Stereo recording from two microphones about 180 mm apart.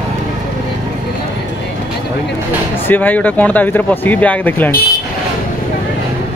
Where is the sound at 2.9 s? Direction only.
10° left (ahead or behind).